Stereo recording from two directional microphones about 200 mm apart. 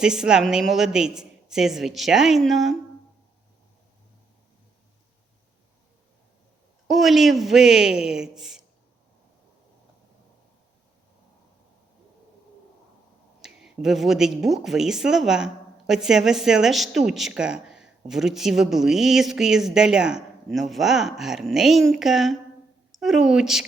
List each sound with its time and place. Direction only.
0.0 s speech: 5° right (ahead or behind)
6.8 s speech: centre (ahead or behind)
13.4 s a woman's voice: centre (ahead or behind)